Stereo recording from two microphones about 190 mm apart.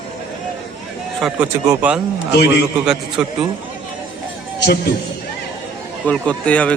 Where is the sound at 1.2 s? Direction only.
10° right (ahead or behind).